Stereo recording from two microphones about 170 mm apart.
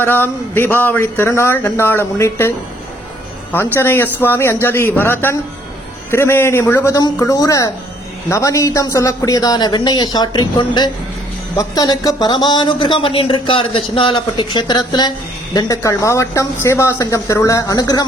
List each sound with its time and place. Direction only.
0.0 s speech: 10° left (ahead or behind)
3.8 s speech: 15° left (ahead or behind)